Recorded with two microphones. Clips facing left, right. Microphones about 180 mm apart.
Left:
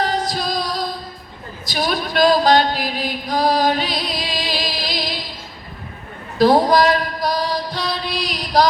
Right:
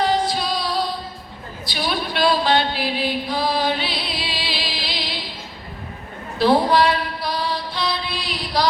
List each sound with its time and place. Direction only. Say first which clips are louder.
0.0 s music: right 1 dB; 40° left (ahead or behind)
1.6 s a sound: left 3 dB; 45° left (ahead or behind)
6.4 s mantra: left 3 dB; 40° left (ahead or behind)